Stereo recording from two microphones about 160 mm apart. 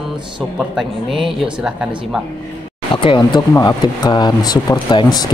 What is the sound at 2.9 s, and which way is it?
Speech, 30° left (ahead or behind).